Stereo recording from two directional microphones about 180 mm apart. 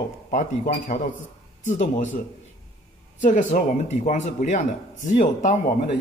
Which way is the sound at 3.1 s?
45° left (ahead or behind).